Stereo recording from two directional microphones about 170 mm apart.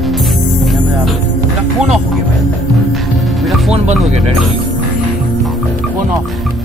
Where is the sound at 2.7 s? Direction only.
Centre (ahead or behind).